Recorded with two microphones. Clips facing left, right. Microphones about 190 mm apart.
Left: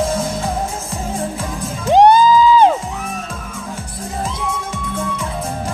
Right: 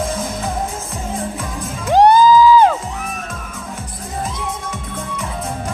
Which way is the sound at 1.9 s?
20° left (ahead or behind).